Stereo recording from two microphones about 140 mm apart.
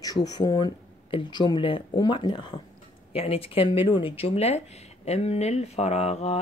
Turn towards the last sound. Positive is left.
turn(degrees=50)  # may be behind; listen again after turning